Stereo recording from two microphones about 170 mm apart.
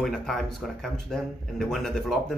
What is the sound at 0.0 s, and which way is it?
Speech, 5° left (ahead or behind).